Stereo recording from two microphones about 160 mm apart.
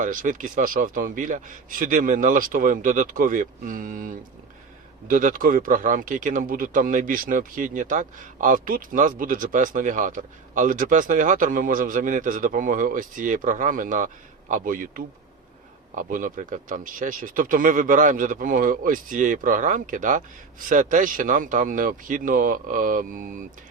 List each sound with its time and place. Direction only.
0.0 s a man's voice: 55° right (ahead or behind)